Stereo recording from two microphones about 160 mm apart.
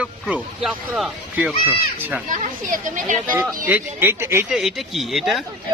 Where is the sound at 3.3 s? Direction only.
10° right (ahead or behind).